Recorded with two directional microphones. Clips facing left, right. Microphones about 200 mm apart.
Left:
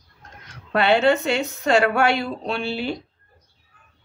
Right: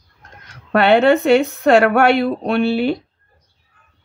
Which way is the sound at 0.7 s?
60° right (ahead or behind).